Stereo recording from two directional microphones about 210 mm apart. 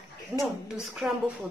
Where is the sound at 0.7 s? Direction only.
Centre (ahead or behind).